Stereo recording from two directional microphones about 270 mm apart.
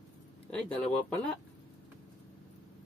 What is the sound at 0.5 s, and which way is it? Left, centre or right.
Speech, centre.